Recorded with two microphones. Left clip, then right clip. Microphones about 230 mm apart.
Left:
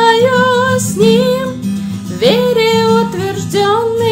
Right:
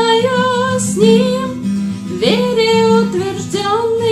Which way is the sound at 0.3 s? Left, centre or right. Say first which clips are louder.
Left 4 dB; left.